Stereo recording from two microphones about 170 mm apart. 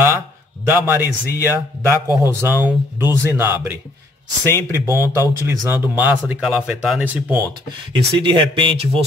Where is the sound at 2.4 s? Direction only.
15° right (ahead or behind).